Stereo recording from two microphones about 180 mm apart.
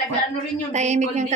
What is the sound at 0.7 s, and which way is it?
Speech, 40° right (ahead or behind).